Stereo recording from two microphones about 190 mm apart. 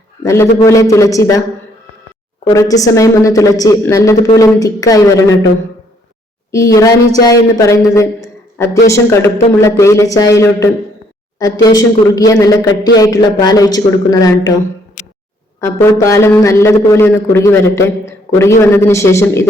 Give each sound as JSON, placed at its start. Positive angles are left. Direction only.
{"t": 0.3, "sound": "a man's voice", "side_deg": 15}
{"t": 2.4, "sound": "a man's voice", "side_deg": 15}
{"t": 6.5, "sound": "a man's voice", "side_deg": 15}
{"t": 15.6, "sound": "a man's voice", "side_deg": 15}